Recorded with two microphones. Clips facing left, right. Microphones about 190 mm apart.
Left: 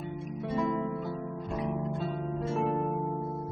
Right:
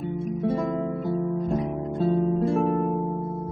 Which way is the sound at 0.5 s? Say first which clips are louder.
Right 3 dB; 50° right (ahead or behind).